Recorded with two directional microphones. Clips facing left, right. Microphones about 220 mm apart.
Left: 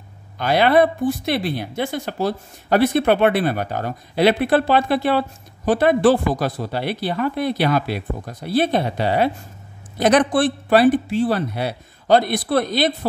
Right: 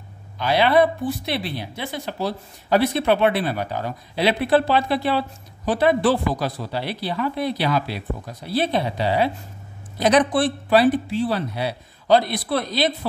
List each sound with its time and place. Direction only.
0.4 s speech: 50° left (ahead or behind)